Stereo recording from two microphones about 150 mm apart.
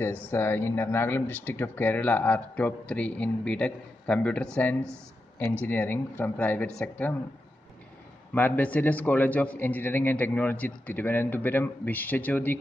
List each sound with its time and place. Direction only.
0.0 s speech: 15° left (ahead or behind)
8.3 s speech: 10° left (ahead or behind)